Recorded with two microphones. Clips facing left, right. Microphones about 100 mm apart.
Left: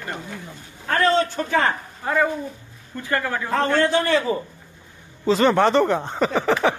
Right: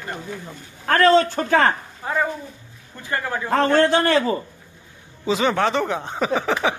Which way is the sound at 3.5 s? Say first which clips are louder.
Right 3 dB; 60° right (ahead or behind).